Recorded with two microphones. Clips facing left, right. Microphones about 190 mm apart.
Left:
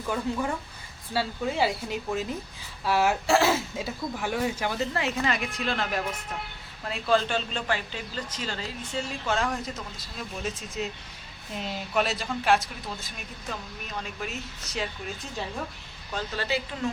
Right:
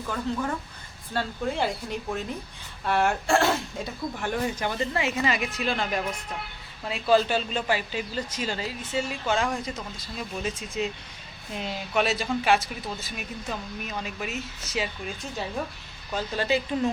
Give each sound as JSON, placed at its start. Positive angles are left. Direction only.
{"t": 1.1, "sound": "speech", "side_deg": 5}
{"t": 16.1, "sound": "speech", "side_deg": -15}